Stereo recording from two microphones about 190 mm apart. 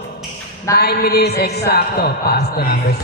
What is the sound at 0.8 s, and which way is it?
A man's voice, 55° left (ahead or behind).